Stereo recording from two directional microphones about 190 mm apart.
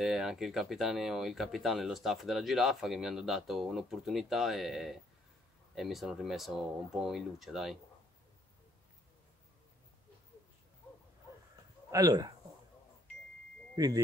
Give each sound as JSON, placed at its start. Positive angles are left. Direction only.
{"t": 0.0, "sound": "speech", "side_deg": 0}
{"t": 11.9, "sound": "speech", "side_deg": -20}
{"t": 13.7, "sound": "speech", "side_deg": -20}